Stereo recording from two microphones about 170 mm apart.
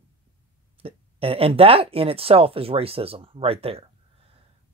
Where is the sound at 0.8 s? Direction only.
35° right (ahead or behind).